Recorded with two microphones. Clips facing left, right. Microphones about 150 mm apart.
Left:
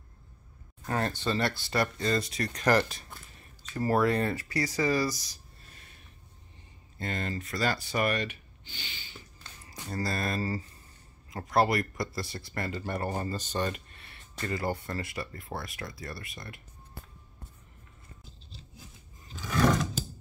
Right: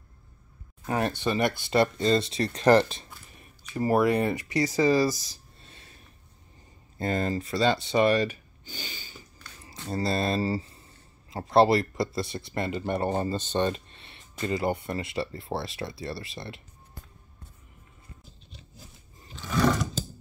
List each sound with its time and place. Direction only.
0.8 s speech: 15° right (ahead or behind)
3.3 s speech: 15° right (ahead or behind)
7.0 s speech: 35° right (ahead or behind)
9.8 s speech: 25° right (ahead or behind)
19.3 s roar: 10° left (ahead or behind)